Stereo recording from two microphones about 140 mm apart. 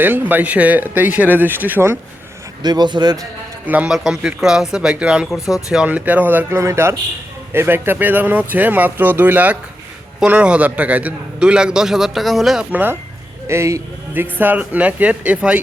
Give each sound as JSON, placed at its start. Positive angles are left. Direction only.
{"t": 0.0, "sound": "a man's voice", "side_deg": -10}
{"t": 2.6, "sound": "a man's voice", "side_deg": -30}
{"t": 3.7, "sound": "a man's voice", "side_deg": -5}